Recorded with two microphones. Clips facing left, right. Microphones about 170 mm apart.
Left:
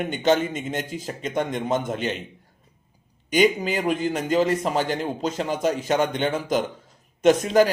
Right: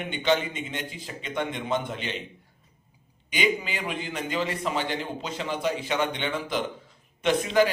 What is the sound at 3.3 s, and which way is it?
A man's voice, 45° left (ahead or behind).